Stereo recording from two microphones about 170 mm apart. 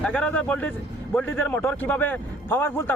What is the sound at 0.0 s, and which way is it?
A man's voice, 10° left (ahead or behind).